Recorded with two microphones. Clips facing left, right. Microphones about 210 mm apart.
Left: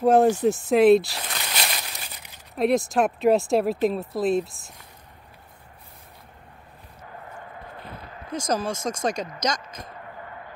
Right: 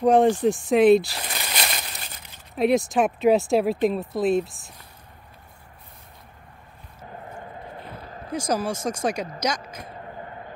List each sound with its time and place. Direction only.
0.0 s speech: 5° left (ahead or behind)
8.5 s speech: 10° right (ahead or behind)
10.0 s a sound: 30° right (ahead or behind)